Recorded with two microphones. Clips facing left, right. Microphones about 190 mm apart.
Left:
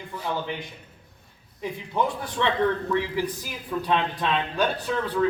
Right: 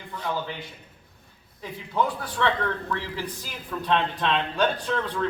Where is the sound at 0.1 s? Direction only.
10° left (ahead or behind).